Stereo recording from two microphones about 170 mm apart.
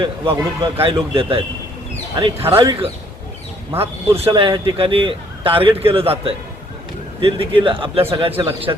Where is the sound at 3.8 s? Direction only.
35° right (ahead or behind).